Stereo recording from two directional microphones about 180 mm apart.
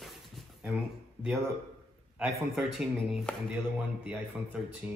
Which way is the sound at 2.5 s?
Centre (ahead or behind).